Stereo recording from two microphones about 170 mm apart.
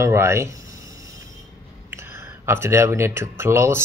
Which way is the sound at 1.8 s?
15° right (ahead or behind).